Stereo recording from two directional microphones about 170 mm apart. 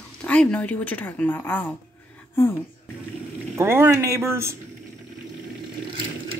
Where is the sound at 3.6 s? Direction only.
15° right (ahead or behind).